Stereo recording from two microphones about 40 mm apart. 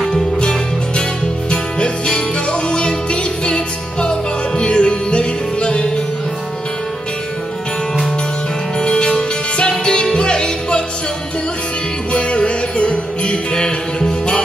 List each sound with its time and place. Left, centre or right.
0.1 s music: left
8.7 s music: left
12.1 s music: left